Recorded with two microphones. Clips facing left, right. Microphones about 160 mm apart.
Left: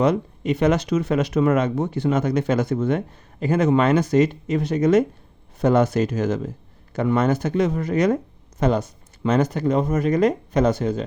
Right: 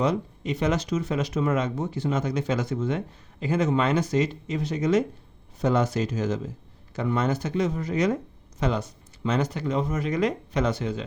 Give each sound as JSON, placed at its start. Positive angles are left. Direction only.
{"t": 0.0, "sound": "speech", "side_deg": 60}